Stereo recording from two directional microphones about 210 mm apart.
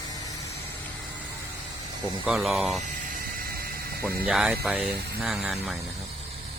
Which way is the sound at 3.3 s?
45° right (ahead or behind).